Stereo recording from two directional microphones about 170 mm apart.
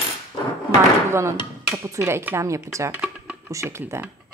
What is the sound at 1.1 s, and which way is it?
Speech, 15° right (ahead or behind).